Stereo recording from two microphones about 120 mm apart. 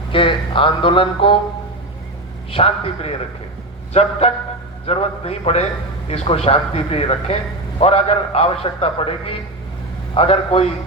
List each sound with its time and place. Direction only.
0.1 s speech: 45° left (ahead or behind)
2.5 s a man's voice: 50° left (ahead or behind)
3.9 s a man's voice: 65° left (ahead or behind)